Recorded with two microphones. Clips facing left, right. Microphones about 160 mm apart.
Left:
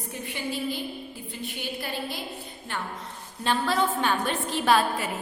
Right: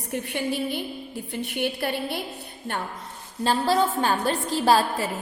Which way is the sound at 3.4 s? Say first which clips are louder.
Right 3 dB; 35° right (ahead or behind).